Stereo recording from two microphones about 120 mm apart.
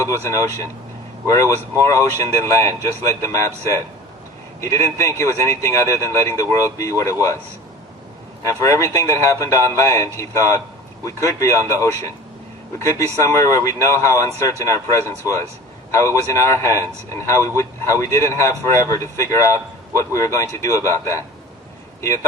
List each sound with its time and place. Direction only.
0.0 s a man's voice: 25° left (ahead or behind)
8.4 s a man's voice: 25° left (ahead or behind)